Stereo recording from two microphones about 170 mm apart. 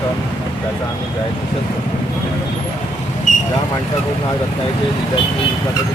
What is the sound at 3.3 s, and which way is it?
Vehicle, 50° left (ahead or behind).